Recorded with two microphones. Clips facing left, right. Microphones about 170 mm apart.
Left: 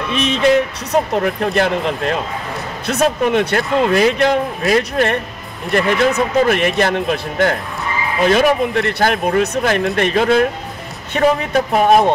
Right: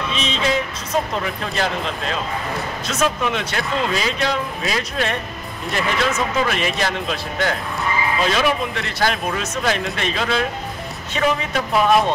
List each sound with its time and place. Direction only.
0.1 s speech: 60° left (ahead or behind)